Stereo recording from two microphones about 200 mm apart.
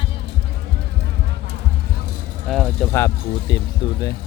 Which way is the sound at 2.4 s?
Centre (ahead or behind).